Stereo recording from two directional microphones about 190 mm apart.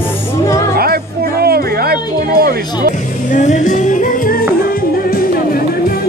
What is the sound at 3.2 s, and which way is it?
Music, 40° left (ahead or behind).